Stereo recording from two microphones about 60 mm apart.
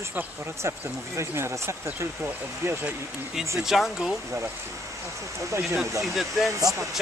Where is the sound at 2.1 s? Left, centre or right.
Right.